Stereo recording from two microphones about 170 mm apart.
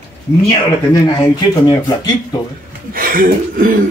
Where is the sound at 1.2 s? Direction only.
25° left (ahead or behind).